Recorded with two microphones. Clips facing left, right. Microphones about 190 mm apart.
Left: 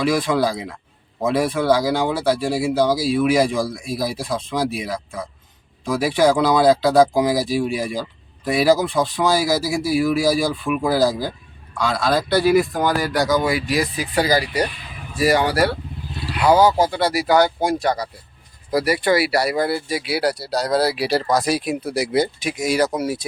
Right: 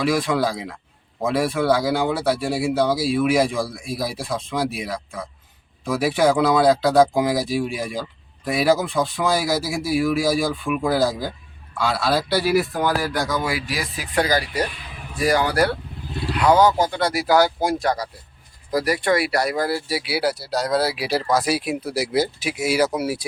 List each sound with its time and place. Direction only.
0.0 s speech: centre (ahead or behind)
14.3 s speech: 10° left (ahead or behind); by 23.2 s 10° right (ahead or behind)